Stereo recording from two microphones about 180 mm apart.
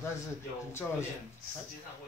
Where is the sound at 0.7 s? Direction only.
15° left (ahead or behind).